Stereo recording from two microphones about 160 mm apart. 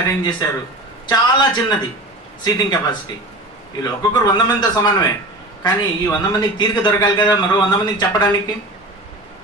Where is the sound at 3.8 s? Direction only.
25° left (ahead or behind).